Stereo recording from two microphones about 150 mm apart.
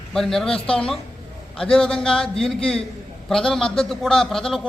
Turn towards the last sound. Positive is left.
turn(degrees=5)  # may be behind; listen again after turning